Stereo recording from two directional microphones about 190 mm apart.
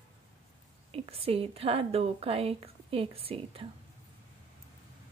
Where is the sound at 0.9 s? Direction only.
30° right (ahead or behind).